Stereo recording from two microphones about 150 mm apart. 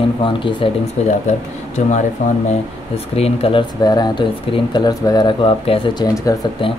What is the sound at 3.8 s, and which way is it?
Speech, 30° left (ahead or behind).